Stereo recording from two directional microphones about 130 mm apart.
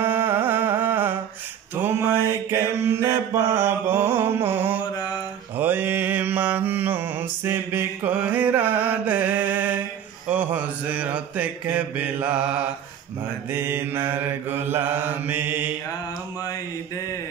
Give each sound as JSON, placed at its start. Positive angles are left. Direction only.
{"t": 0.0, "sound": "carnatic music", "side_deg": -15}
{"t": 1.8, "sound": "mantra", "side_deg": -15}